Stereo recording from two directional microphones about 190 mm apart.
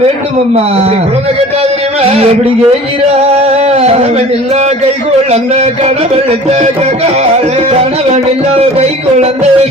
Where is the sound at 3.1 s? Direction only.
35° right (ahead or behind).